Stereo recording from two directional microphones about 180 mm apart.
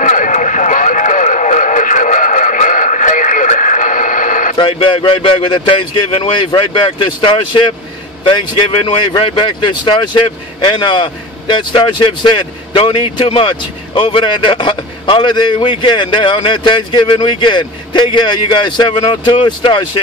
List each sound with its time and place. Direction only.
0.0 s radio: 40° left (ahead or behind)
4.6 s speech: 30° left (ahead or behind)